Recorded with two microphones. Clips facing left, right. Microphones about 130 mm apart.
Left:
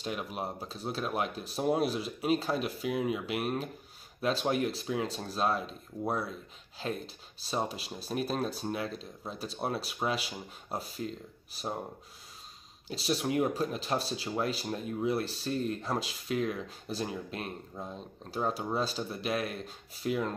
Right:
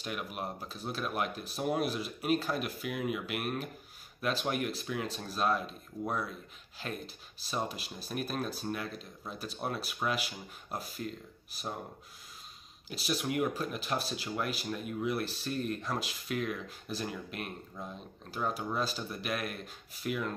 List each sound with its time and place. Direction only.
0.0 s speech: 30° left (ahead or behind)
6.8 s speech: 25° left (ahead or behind)
12.8 s speech: 30° left (ahead or behind)